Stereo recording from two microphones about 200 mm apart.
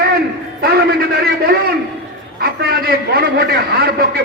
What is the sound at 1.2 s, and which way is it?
A man's voice, 50° right (ahead or behind).